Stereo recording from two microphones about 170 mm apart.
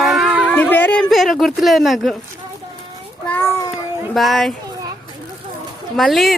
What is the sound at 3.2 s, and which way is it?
Child singing, 10° left (ahead or behind).